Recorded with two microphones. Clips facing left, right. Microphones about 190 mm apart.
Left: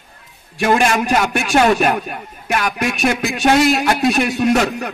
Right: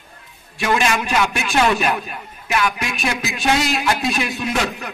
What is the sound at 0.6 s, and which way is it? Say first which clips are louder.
A man's voice: left 4 dB; 50° left (ahead or behind).